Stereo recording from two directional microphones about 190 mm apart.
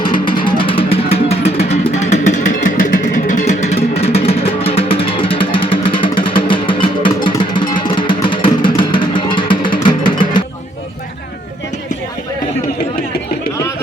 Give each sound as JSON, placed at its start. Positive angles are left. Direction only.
{"t": 0.0, "sound": "music", "side_deg": 25}